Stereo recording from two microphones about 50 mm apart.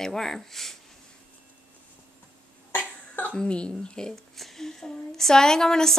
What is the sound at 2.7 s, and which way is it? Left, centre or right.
Cough, left.